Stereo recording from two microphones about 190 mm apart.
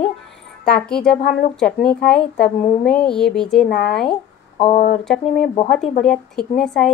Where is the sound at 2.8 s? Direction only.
5° left (ahead or behind).